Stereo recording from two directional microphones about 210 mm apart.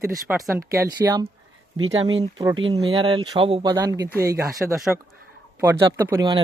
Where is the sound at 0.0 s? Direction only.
15° right (ahead or behind).